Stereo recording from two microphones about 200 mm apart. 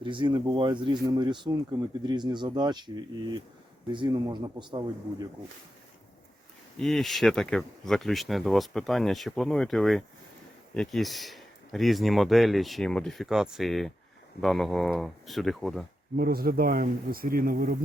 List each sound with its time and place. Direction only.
0.0 s speech: 25° right (ahead or behind)
6.7 s speech: centre (ahead or behind)
16.1 s speech: 50° right (ahead or behind)